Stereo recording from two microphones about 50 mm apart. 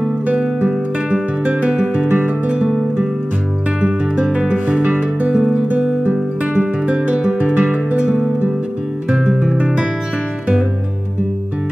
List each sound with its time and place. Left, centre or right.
0.4 s music: right
1.7 s music: right
3.8 s music: right
6.0 s music: right
9.1 s music: centre